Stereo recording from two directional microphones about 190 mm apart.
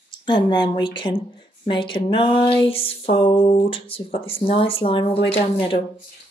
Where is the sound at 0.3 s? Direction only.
25° left (ahead or behind).